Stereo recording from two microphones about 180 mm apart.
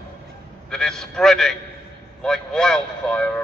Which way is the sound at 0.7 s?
5° left (ahead or behind).